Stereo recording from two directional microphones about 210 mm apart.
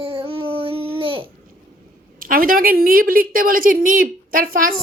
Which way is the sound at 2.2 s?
40° right (ahead or behind).